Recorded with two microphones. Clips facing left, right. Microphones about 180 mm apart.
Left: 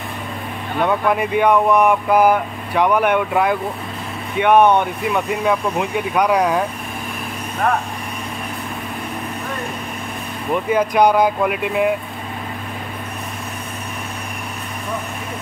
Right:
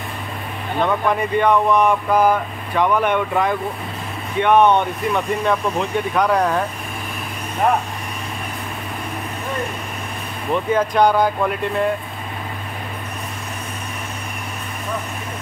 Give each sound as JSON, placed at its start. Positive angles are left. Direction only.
{"t": 0.8, "sound": "speech", "side_deg": 10}
{"t": 10.5, "sound": "speech", "side_deg": 10}